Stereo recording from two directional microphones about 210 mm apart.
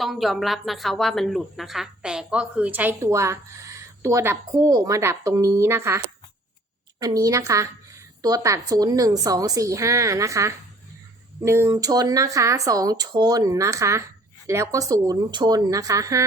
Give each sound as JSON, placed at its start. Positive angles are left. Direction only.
{"t": 0.0, "sound": "speech", "side_deg": 0}
{"t": 7.0, "sound": "speech", "side_deg": -15}